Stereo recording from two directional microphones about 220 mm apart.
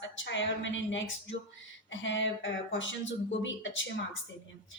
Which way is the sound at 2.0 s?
55° left (ahead or behind).